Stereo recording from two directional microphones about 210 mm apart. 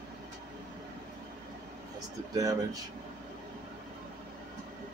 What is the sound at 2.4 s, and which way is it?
Speech, 15° right (ahead or behind).